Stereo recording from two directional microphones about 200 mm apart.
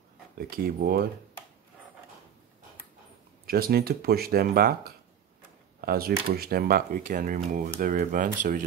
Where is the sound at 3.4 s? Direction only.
50° right (ahead or behind).